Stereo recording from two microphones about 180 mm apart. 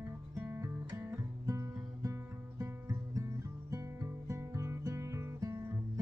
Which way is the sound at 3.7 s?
15° right (ahead or behind).